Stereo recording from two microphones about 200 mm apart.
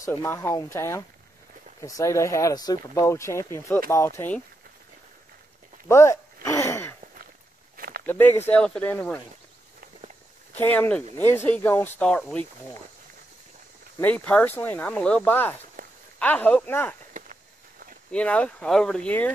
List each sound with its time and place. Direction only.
0.0 s speech: 15° left (ahead or behind)
5.9 s a sound: 15° left (ahead or behind)
7.7 s walk: 45° right (ahead or behind)
8.1 s speech: 10° left (ahead or behind)
10.5 s speech: 10° left (ahead or behind)
13.9 s speech: 10° left (ahead or behind)
15.8 s a sound: 45° right (ahead or behind)
16.2 s speech: 10° left (ahead or behind)
17.1 s walk: 40° right (ahead or behind)
18.1 s speech: 5° left (ahead or behind)